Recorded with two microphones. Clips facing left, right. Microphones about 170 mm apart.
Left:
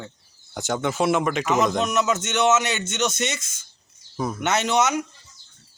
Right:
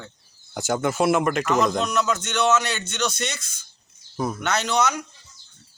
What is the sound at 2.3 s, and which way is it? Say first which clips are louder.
A man's voice: left 1 dB; 20° left (ahead or behind).